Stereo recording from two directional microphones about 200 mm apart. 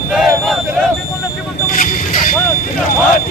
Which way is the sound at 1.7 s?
40° left (ahead or behind).